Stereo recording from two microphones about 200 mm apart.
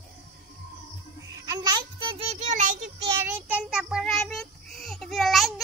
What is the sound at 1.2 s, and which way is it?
Child singing, 15° right (ahead or behind).